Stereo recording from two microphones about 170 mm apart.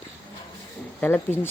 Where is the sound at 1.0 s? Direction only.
10° left (ahead or behind).